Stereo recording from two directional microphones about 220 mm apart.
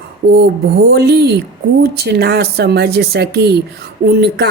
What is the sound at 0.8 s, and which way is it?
Speech, 45° right (ahead or behind).